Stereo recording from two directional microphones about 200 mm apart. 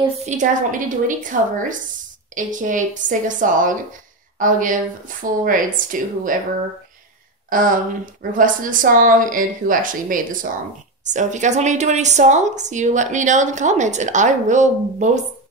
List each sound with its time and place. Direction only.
0.2 s a woman's voice: 40° right (ahead or behind)
7.4 s a woman's voice: 45° right (ahead or behind)